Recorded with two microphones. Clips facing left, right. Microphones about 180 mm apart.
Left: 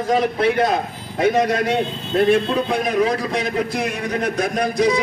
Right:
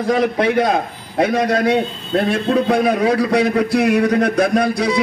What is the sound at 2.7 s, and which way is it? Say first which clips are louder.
A man's voice: right 2 dB; 70° right (ahead or behind).